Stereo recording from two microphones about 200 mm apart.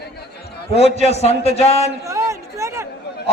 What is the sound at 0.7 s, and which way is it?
A man's voice, 30° left (ahead or behind).